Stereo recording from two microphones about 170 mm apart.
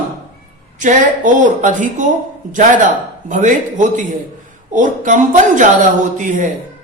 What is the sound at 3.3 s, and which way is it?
A man's voice, 50° right (ahead or behind).